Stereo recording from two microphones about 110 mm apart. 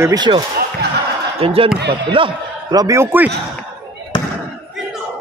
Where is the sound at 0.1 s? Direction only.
40° right (ahead or behind).